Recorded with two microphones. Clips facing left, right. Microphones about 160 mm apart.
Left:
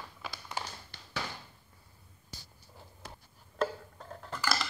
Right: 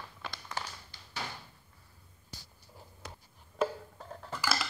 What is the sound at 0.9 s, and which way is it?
Tap, 65° left (ahead or behind).